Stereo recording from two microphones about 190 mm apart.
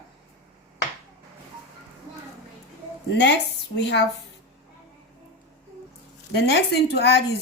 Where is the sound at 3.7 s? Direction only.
65° left (ahead or behind).